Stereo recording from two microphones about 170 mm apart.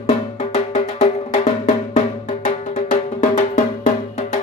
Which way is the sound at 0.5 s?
45° left (ahead or behind).